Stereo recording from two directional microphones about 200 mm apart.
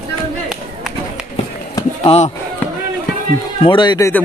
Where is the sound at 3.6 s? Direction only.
20° left (ahead or behind).